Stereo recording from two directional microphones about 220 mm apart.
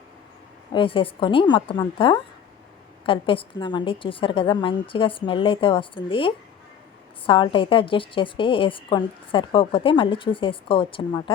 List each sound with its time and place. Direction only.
0.7 s a woman's voice: 25° left (ahead or behind)